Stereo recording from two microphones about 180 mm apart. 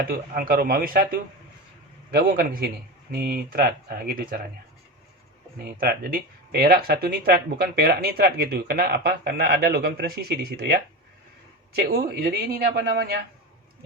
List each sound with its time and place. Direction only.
0.0 s a man's voice: 55° right (ahead or behind)
5.8 s speech: 55° right (ahead or behind)